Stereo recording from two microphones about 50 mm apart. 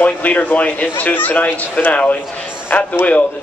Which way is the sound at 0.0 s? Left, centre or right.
Left.